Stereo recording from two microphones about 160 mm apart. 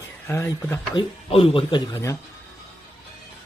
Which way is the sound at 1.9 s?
20° left (ahead or behind).